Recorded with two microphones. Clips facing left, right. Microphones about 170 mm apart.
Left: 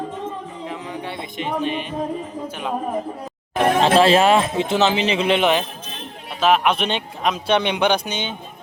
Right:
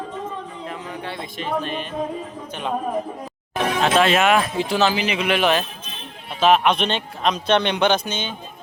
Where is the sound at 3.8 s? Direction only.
30° left (ahead or behind).